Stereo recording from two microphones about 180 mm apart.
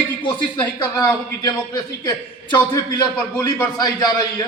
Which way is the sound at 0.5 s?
25° left (ahead or behind).